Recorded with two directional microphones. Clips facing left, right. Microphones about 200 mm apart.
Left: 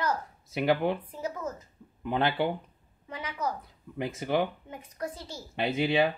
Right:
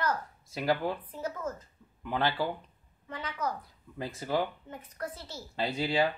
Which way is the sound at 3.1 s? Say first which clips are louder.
Left 1 dB; 10° left (ahead or behind).